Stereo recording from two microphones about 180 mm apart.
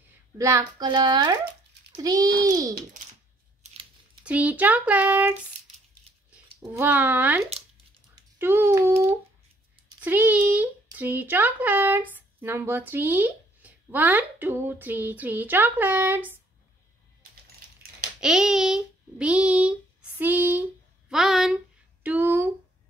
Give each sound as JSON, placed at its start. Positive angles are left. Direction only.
{"t": 0.4, "sound": "a child's voice", "side_deg": -15}
{"t": 3.6, "sound": "scissors", "side_deg": -30}
{"t": 4.2, "sound": "speech", "side_deg": -10}
{"t": 6.8, "sound": "speech", "side_deg": -10}
{"t": 10.0, "sound": "speech", "side_deg": -10}
{"t": 18.2, "sound": "a child's voice", "side_deg": 0}